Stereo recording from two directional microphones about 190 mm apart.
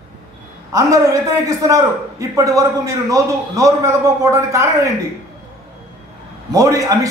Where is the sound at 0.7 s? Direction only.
15° right (ahead or behind).